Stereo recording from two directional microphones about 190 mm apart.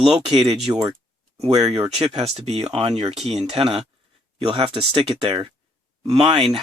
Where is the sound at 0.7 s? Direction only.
20° right (ahead or behind).